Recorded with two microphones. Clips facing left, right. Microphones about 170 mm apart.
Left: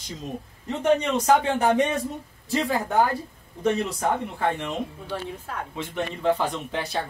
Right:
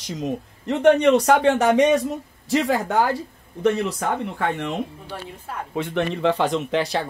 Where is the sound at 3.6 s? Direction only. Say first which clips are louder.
Right 4 dB; 70° right (ahead or behind).